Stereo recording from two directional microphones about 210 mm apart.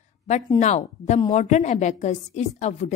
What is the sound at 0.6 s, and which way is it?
A woman's voice, 35° left (ahead or behind).